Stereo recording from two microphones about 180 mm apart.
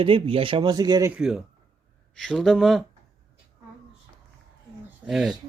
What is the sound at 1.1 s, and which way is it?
Speech, 5° right (ahead or behind).